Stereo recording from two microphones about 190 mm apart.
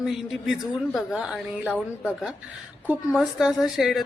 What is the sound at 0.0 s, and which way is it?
A woman's voice, centre (ahead or behind).